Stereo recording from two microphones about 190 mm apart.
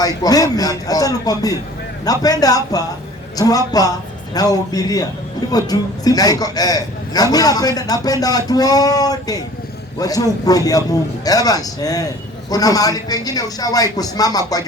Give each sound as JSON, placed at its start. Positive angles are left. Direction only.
{"t": 0.0, "sound": "a man's voice", "side_deg": 20}